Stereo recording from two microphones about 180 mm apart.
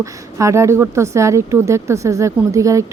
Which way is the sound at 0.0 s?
15° right (ahead or behind).